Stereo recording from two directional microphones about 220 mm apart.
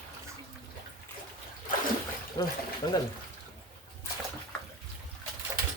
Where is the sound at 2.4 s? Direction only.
20° left (ahead or behind).